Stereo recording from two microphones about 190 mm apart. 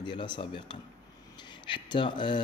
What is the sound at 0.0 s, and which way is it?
Speech, 25° left (ahead or behind).